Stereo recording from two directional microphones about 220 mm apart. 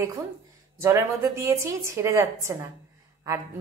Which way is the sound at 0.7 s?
10° right (ahead or behind).